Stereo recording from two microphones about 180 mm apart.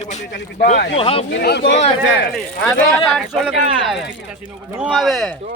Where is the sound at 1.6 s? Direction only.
35° left (ahead or behind).